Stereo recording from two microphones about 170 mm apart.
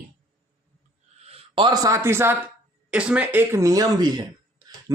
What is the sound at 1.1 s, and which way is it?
Speech, 35° right (ahead or behind).